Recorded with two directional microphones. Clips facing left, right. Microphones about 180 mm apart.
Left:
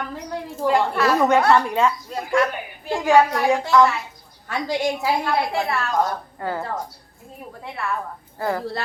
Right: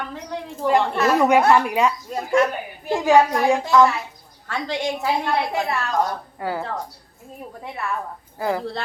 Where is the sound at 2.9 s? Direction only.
15° right (ahead or behind).